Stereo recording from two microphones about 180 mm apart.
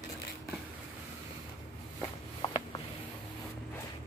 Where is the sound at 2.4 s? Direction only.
20° left (ahead or behind).